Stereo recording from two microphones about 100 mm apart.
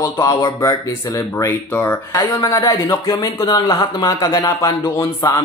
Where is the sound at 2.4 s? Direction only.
40° left (ahead or behind).